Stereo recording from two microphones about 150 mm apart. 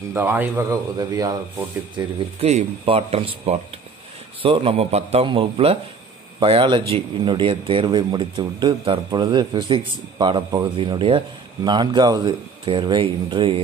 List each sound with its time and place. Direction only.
0.1 s speech: 15° right (ahead or behind)
2.4 s a man's voice: 40° right (ahead or behind)